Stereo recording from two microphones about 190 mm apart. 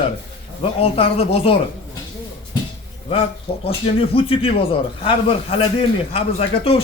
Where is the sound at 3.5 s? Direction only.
30° left (ahead or behind).